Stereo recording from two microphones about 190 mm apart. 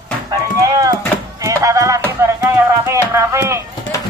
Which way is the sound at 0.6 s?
20° right (ahead or behind).